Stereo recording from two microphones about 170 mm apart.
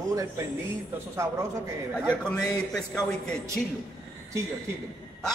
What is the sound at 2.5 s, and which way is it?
Speech, 5° left (ahead or behind).